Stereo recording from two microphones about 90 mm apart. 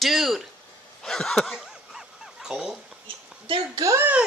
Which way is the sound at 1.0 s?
5° left (ahead or behind).